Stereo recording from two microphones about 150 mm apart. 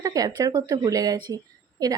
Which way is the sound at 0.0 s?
25° right (ahead or behind).